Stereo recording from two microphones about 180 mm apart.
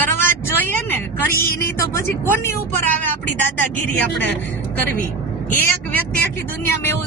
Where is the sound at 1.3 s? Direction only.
55° left (ahead or behind).